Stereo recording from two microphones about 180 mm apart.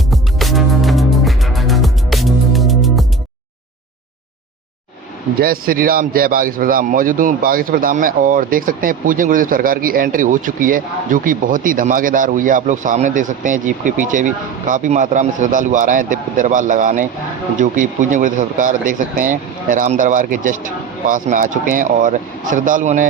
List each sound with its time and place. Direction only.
0.1 s music: centre (ahead or behind)
5.4 s a man's voice: 55° right (ahead or behind)